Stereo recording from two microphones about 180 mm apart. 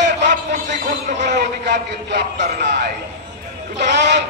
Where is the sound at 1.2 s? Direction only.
45° right (ahead or behind).